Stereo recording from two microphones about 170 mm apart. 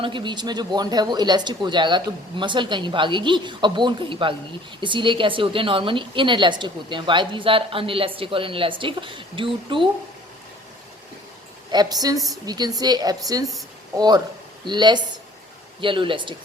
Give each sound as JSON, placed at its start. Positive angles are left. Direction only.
{"t": 0.0, "sound": "a woman's voice", "side_deg": -25}
{"t": 11.7, "sound": "speech", "side_deg": -25}